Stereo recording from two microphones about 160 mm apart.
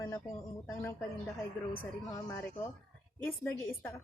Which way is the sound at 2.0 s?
20° left (ahead or behind).